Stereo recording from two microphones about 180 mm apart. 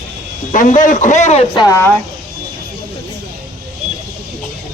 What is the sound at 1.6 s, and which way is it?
Speech, 15° left (ahead or behind).